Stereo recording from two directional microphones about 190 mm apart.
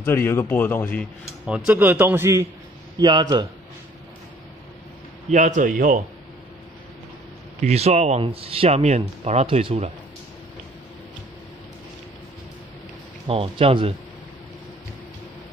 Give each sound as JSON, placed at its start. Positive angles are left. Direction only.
{"t": 0.0, "sound": "a man's voice", "side_deg": 10}
{"t": 1.7, "sound": "a man's voice", "side_deg": -10}
{"t": 5.3, "sound": "speech", "side_deg": -40}
{"t": 7.6, "sound": "speech", "side_deg": -35}
{"t": 13.3, "sound": "speech", "side_deg": -30}